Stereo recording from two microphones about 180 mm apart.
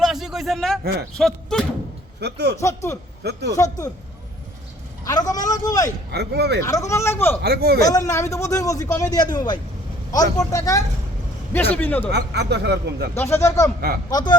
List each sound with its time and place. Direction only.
0.0 s a sound: centre (ahead or behind)
1.1 s speech: 5° left (ahead or behind)
2.2 s speech: 65° right (ahead or behind)
2.6 s speech: 15° left (ahead or behind)
5.0 s speech: 20° left (ahead or behind)
6.1 s speech: 65° right (ahead or behind)
6.7 s speech: 20° left (ahead or behind)
7.4 s speech: 60° right (ahead or behind)
7.9 s speech: 20° left (ahead or behind)
12.1 s speech: 70° right (ahead or behind)
13.1 s speech: 15° left (ahead or behind)